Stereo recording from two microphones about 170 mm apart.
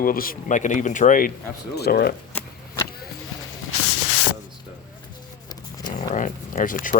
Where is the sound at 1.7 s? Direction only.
65° left (ahead or behind).